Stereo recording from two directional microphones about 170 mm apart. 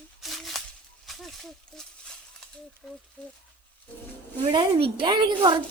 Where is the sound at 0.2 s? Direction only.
Centre (ahead or behind).